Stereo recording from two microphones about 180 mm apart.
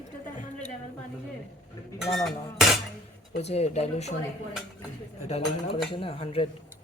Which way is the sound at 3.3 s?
35° left (ahead or behind).